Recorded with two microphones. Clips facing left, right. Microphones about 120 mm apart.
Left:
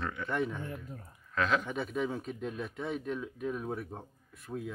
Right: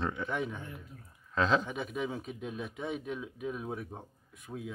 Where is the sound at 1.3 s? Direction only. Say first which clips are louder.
Right 2 dB; 25° right (ahead or behind).